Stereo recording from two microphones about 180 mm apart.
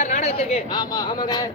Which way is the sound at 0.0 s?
40° left (ahead or behind).